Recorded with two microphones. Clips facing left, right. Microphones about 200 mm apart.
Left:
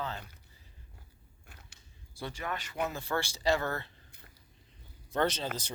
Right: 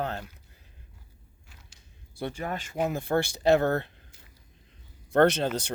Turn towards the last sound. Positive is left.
turn(degrees=-65)  # may be behind; listen again after turning